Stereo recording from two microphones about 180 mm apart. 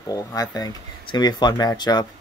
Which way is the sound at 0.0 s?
20° left (ahead or behind).